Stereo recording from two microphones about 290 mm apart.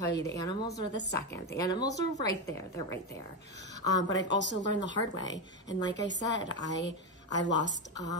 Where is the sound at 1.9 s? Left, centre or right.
Left.